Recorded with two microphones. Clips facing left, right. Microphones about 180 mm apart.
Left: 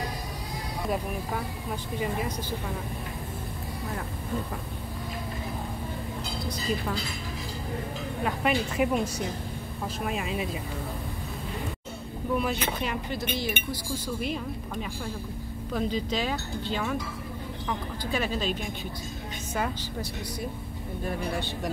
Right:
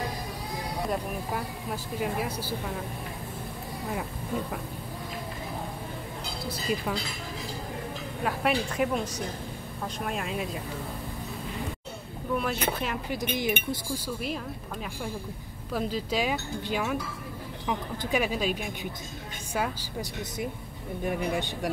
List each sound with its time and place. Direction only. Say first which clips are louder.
2.0 s a woman's voice: even; 5° right (ahead or behind)
8.2 s a woman's voice: even; centre (ahead or behind)
12.4 s a woman's voice: right 1 dB; centre (ahead or behind)
13.1 s speech: right 2 dB; 15° right (ahead or behind)
21.0 s speech: right 2 dB; 15° right (ahead or behind)